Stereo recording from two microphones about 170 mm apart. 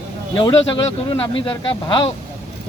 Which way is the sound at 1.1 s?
30° left (ahead or behind).